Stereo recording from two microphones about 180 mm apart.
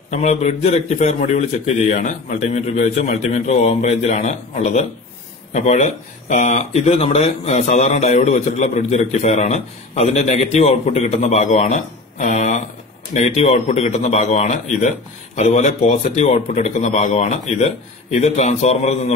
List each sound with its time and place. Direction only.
0.1 s speech: 40° left (ahead or behind)